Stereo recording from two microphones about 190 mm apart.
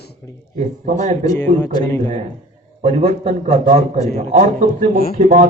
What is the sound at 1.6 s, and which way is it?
Speech, 20° left (ahead or behind).